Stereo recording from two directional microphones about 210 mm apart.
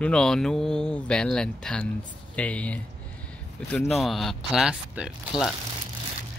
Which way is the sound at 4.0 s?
Centre (ahead or behind).